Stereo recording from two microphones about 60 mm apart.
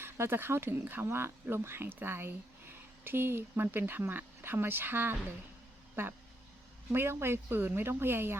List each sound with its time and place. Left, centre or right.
0.0 s speech: right